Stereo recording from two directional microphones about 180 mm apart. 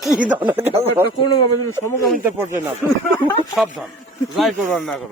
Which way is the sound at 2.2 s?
15° right (ahead or behind).